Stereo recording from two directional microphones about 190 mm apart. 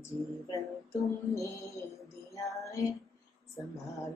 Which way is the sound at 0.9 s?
15° left (ahead or behind).